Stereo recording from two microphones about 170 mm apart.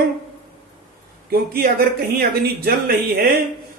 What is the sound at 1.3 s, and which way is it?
Speech, 60° right (ahead or behind).